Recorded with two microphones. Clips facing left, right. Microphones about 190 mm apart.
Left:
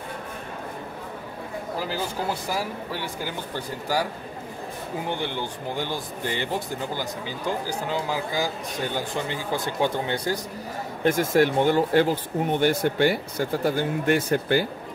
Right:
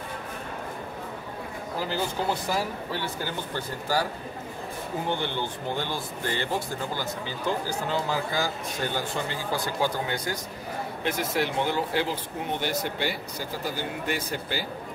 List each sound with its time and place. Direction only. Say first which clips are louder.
2.9 s speech: even; 10° left (ahead or behind)
5.0 s speech: even; 10° left (ahead or behind); by 10.4 s 30° left (ahead or behind)
11.1 s speech: left 8 dB; 45° left (ahead or behind)